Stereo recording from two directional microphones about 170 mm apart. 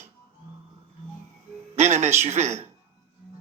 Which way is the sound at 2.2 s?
40° right (ahead or behind).